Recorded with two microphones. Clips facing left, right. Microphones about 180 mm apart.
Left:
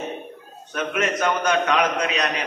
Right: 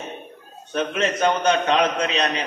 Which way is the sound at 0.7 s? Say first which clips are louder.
Right 1 dB; 30° right (ahead or behind).